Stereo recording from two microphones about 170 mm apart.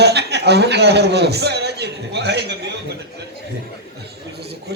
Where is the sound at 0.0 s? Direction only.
80° right.